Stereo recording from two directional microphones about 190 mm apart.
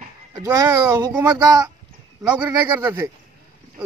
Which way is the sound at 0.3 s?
20° right (ahead or behind).